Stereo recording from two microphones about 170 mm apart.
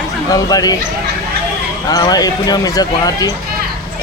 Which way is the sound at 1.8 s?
20° left (ahead or behind).